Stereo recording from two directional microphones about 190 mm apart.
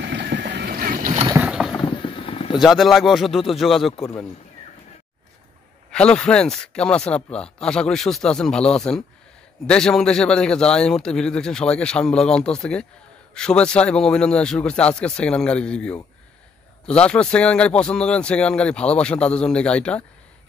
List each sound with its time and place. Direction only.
0.0 s boat: 65° right (ahead or behind); by 1.2 s 45° right (ahead or behind)
1.4 s a sound: 5° right (ahead or behind)
1.7 s vehicle: 25° left (ahead or behind)
2.6 s speech: centre (ahead or behind)
4.0 s a man's voice: 15° left (ahead or behind)
5.9 s speech: 5° left (ahead or behind)